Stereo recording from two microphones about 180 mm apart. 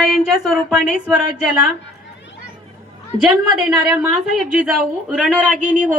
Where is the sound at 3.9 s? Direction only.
5° right (ahead or behind).